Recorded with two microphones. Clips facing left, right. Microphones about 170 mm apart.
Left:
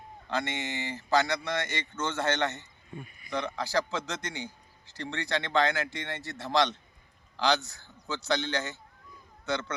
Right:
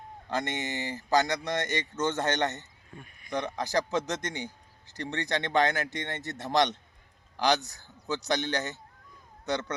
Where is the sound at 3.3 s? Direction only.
15° right (ahead or behind).